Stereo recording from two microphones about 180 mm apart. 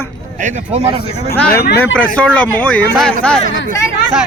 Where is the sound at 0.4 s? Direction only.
40° right (ahead or behind).